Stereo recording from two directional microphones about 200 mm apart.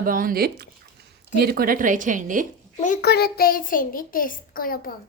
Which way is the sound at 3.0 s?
55° left (ahead or behind).